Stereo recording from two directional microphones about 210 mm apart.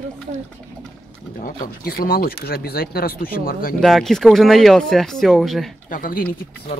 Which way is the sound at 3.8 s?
Centre (ahead or behind).